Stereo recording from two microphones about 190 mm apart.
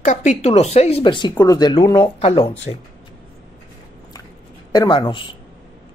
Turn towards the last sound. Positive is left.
turn(degrees=25)  # may be behind; listen again after turning